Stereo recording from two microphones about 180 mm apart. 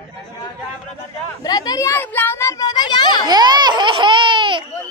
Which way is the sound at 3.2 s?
25° right (ahead or behind).